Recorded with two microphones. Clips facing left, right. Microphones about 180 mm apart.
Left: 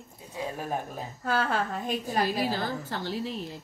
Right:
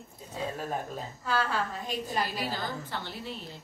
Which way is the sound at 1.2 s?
55° left (ahead or behind).